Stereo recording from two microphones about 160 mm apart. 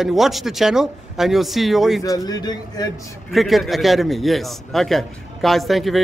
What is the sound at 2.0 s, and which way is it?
Speech, 25° left (ahead or behind).